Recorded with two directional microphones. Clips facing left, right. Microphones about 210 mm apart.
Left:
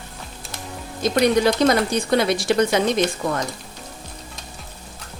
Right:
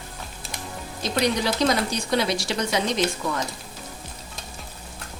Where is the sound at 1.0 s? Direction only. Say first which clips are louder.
Left 7 dB; 50° left (ahead or behind).